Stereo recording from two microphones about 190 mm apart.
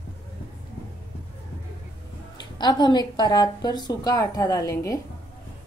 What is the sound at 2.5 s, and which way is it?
A woman's voice, 20° left (ahead or behind).